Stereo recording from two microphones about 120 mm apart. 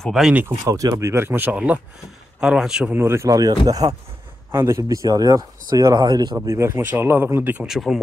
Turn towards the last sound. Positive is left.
turn(degrees=-5)  # may be behind; listen again after turning